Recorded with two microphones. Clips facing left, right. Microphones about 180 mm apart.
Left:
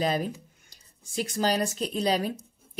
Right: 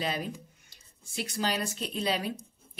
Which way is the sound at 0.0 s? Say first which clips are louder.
Left 6 dB; 45° left (ahead or behind).